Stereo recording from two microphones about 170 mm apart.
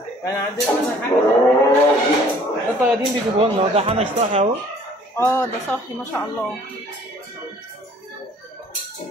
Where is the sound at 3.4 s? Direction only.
35° right (ahead or behind).